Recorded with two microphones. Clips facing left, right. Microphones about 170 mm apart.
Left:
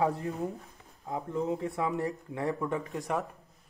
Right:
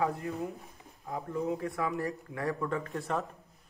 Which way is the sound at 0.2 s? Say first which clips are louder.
Left 2 dB; 40° left (ahead or behind).